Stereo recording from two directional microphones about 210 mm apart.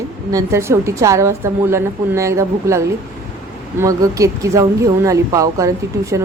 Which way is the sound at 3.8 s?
15° right (ahead or behind).